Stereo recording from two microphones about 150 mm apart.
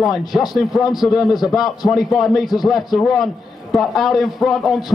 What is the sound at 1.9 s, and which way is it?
A man's voice, centre (ahead or behind).